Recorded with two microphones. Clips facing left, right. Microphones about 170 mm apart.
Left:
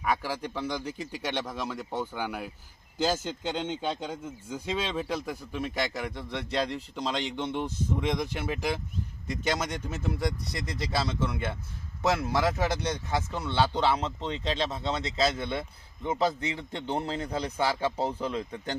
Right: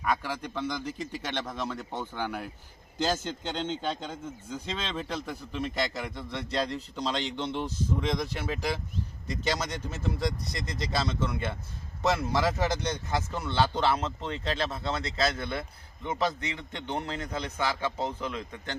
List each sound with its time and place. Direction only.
0.0 s speech: 5° left (ahead or behind)
9.3 s speech: centre (ahead or behind)
10.7 s a man's voice: 5° left (ahead or behind); by 18.8 s 35° left (ahead or behind)